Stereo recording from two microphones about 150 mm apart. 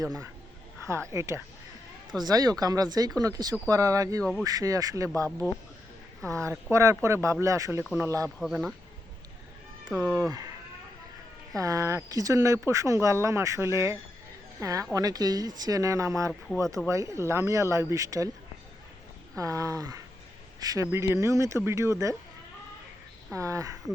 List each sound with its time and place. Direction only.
0.9 s speech: 20° right (ahead or behind)
4.2 s speech: centre (ahead or behind)
4.4 s speech: 25° right (ahead or behind)
8.4 s speech: centre (ahead or behind)
9.9 s speech: 20° right (ahead or behind)
11.5 s speech: 20° right (ahead or behind)
19.4 s speech: 20° right (ahead or behind)
23.3 s speech: 20° right (ahead or behind)